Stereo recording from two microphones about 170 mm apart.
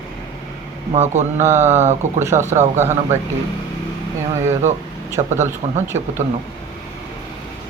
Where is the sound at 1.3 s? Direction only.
15° right (ahead or behind).